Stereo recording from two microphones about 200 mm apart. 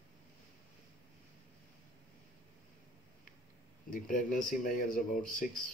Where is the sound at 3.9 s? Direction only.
40° left (ahead or behind).